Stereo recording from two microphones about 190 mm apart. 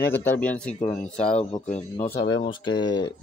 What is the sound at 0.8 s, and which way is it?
Speech, 40° left (ahead or behind).